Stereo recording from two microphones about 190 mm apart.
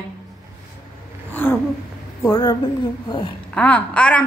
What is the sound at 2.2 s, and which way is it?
A woman's voice, 20° left (ahead or behind).